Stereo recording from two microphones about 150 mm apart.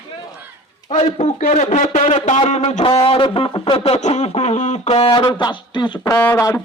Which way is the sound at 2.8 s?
35° left (ahead or behind).